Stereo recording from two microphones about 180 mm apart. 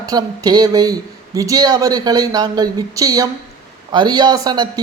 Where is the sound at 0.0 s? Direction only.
20° right (ahead or behind).